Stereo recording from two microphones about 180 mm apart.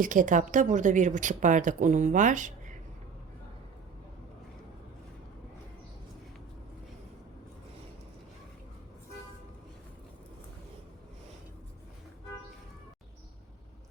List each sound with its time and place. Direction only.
0.0 s a woman's voice: 45° right (ahead or behind)